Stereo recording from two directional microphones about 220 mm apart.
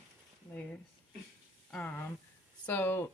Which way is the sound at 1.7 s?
10° left (ahead or behind).